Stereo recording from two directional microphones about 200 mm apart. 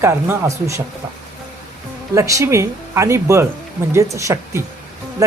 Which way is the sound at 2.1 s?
15° right (ahead or behind).